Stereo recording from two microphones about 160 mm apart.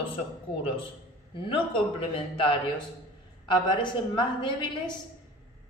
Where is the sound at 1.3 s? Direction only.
35° left (ahead or behind).